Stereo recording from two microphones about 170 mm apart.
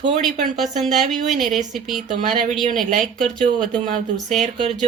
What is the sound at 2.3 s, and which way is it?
Speech, 55° right (ahead or behind).